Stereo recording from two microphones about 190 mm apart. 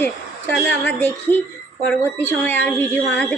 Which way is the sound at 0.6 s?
10° left (ahead or behind).